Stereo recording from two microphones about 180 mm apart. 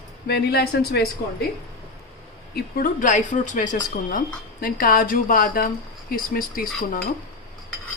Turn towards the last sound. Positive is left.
turn(degrees=50)  # may be behind; listen again after turning